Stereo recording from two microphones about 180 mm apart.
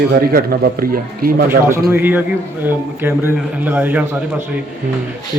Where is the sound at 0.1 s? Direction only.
55° right (ahead or behind).